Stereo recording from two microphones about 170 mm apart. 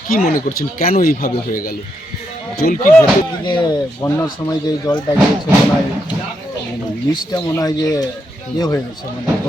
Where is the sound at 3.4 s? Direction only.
25° left (ahead or behind).